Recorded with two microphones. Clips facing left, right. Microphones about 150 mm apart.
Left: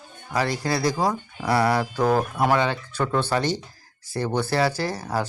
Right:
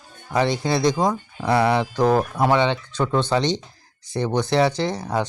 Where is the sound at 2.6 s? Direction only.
5° left (ahead or behind).